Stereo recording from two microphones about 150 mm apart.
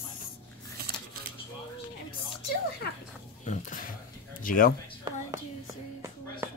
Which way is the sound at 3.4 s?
55° left (ahead or behind).